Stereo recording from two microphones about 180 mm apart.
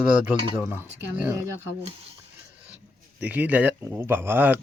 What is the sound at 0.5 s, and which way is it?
Speech, 10° right (ahead or behind).